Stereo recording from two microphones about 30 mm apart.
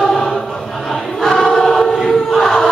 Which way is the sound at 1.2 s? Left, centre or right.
Centre.